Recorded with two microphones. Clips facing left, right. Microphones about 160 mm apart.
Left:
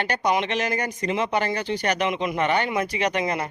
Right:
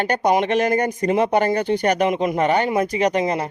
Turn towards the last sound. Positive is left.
turn(degrees=-35)  # may be behind; listen again after turning